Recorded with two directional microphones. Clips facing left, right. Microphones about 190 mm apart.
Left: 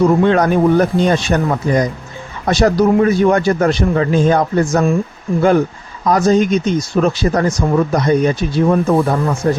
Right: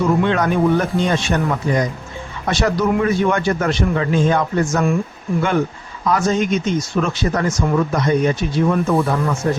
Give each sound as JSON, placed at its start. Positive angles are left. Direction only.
{"t": 0.0, "sound": "speech", "side_deg": 35}
{"t": 6.1, "sound": "speech", "side_deg": 35}